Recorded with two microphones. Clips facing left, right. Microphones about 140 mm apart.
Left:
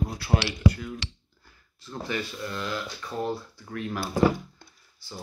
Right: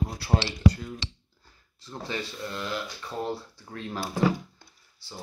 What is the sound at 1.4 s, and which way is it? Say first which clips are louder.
Speech: left 2 dB; 25° right (ahead or behind).